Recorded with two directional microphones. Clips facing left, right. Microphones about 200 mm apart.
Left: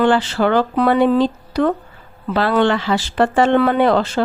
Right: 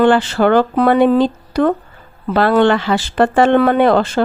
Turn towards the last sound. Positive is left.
turn(degrees=-55)  # may be behind; listen again after turning